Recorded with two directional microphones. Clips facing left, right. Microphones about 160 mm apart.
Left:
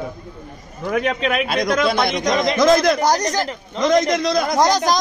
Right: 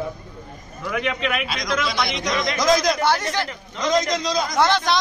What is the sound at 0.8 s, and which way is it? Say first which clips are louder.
Speech: left 4 dB; 40° left (ahead or behind).